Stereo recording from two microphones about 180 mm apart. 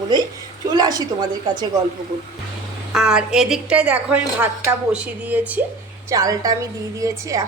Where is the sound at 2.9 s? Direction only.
5° right (ahead or behind).